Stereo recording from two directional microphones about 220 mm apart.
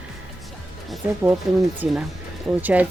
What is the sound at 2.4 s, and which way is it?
Speech, 5° right (ahead or behind).